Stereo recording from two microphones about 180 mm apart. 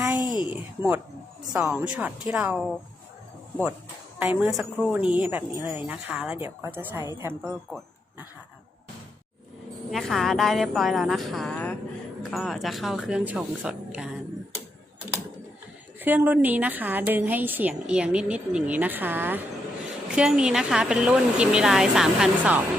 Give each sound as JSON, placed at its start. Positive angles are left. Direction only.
{"t": 0.2, "sound": "a sound", "side_deg": 25}
{"t": 0.5, "sound": "a woman's voice", "side_deg": -10}
{"t": 4.2, "sound": "a woman's voice", "side_deg": -5}
{"t": 9.9, "sound": "speech", "side_deg": 0}
{"t": 16.0, "sound": "a woman's voice", "side_deg": -10}